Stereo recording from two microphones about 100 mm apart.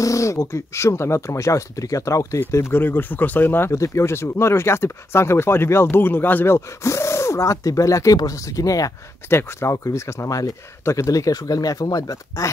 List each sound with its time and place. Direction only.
0.0 s speech: 30° left (ahead or behind)
9.3 s speech: 25° left (ahead or behind)